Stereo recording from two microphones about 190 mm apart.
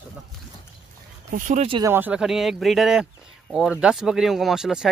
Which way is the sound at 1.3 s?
40° right (ahead or behind).